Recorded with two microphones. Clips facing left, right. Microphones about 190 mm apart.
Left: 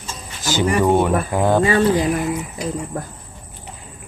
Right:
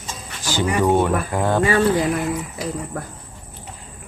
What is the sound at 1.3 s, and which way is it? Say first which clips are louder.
Speech: left 2 dB; 15° left (ahead or behind).